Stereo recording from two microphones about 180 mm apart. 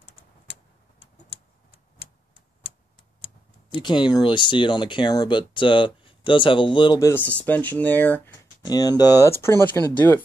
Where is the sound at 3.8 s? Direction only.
25° left (ahead or behind).